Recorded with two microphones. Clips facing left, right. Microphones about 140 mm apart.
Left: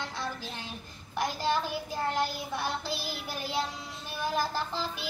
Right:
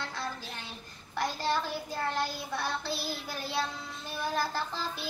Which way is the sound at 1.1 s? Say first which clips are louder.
Left 1 dB; 15° left (ahead or behind).